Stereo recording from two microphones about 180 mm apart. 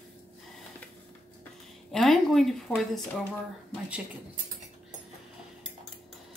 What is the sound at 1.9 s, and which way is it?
A woman's voice, centre (ahead or behind).